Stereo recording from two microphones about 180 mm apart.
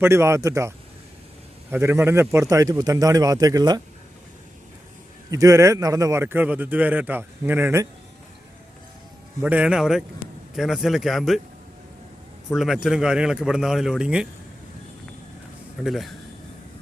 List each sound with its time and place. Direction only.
0.0 s speech: 15° right (ahead or behind)
1.7 s a man's voice: 15° right (ahead or behind)
5.3 s speech: 15° right (ahead or behind)
9.4 s speech: 5° right (ahead or behind)
12.5 s speech: centre (ahead or behind)
15.8 s speech: centre (ahead or behind)